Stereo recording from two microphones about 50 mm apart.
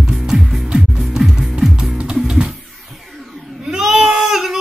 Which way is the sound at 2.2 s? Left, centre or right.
Centre.